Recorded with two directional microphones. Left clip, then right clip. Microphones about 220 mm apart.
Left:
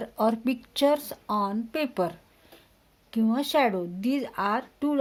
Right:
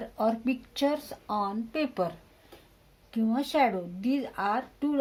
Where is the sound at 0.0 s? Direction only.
50° left (ahead or behind).